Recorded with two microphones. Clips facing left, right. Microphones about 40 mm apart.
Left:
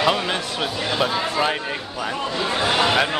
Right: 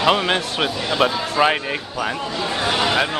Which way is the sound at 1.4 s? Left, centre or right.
Right.